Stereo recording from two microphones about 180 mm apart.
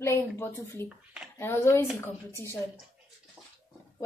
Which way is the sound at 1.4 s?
15° left (ahead or behind).